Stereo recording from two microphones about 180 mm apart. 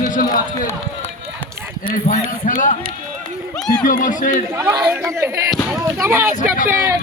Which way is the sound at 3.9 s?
45° left (ahead or behind).